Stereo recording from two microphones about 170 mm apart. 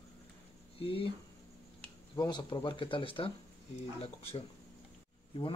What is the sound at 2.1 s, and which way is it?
Speech, 25° left (ahead or behind).